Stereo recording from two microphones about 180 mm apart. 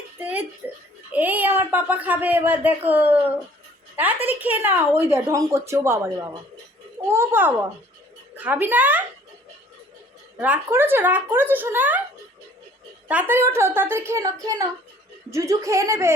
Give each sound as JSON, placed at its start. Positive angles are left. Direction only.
{"t": 0.2, "sound": "a sound", "side_deg": -10}
{"t": 0.6, "sound": "speech", "side_deg": -10}
{"t": 4.3, "sound": "speech", "side_deg": -10}
{"t": 10.3, "sound": "speech", "side_deg": -10}
{"t": 13.1, "sound": "speech", "side_deg": -10}